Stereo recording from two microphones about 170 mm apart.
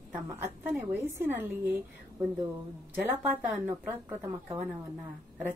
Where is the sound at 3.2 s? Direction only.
10° right (ahead or behind).